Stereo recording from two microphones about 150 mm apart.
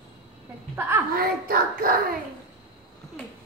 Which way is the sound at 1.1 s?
80° right.